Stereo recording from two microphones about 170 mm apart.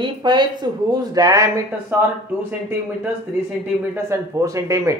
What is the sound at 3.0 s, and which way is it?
Speech, 10° right (ahead or behind).